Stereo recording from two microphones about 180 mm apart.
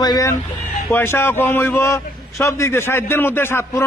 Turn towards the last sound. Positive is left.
turn(degrees=15)  # may be behind; listen again after turning